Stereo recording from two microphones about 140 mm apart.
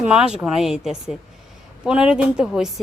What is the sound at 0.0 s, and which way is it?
Speech, 5° right (ahead or behind).